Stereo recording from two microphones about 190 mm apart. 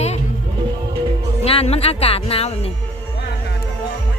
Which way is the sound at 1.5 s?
30° left (ahead or behind).